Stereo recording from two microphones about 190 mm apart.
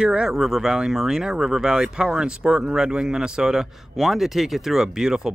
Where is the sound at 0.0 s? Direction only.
5° right (ahead or behind).